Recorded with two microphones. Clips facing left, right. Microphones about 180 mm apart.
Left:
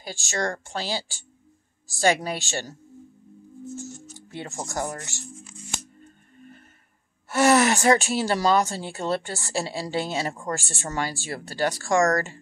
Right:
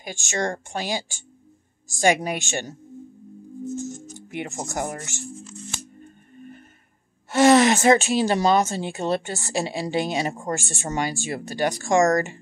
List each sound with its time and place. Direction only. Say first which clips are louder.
0.0 s speech: right 2 dB; 20° right (ahead or behind)
3.7 s speech: right 5 dB; 20° right (ahead or behind)
7.2 s speech: right 4 dB; 15° right (ahead or behind)